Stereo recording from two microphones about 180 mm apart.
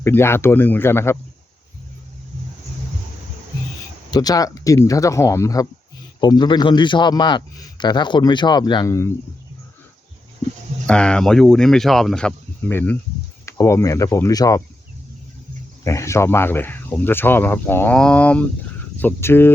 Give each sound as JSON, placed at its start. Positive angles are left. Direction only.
{"t": 0.0, "sound": "speech", "side_deg": 15}
{"t": 4.1, "sound": "a man's voice", "side_deg": 20}
{"t": 10.8, "sound": "speech", "side_deg": 5}
{"t": 15.8, "sound": "speech", "side_deg": 15}